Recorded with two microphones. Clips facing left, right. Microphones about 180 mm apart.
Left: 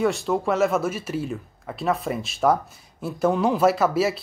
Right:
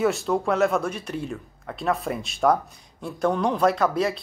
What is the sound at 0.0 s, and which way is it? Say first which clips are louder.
Speech: even; centre (ahead or behind).